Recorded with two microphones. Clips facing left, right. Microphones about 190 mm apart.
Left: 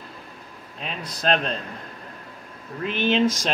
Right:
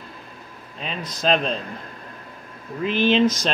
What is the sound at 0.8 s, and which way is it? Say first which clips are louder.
Speech: right 2 dB; centre (ahead or behind).